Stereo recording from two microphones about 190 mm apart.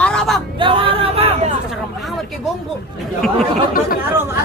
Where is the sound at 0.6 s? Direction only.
30° right (ahead or behind).